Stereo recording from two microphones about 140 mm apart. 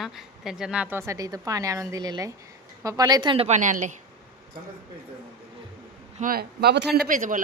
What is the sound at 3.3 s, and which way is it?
Speech, 45° right (ahead or behind).